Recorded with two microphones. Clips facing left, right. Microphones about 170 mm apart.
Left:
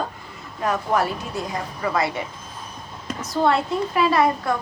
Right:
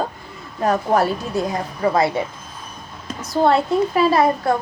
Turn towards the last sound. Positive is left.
turn(degrees=-35)  # may be behind; listen again after turning